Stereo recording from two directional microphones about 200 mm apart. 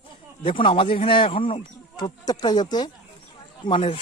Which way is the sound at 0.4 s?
25° left (ahead or behind).